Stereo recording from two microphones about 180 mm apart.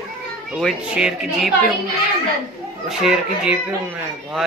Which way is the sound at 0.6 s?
Centre (ahead or behind).